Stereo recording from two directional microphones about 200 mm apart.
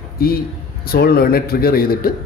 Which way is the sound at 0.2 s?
50° left (ahead or behind).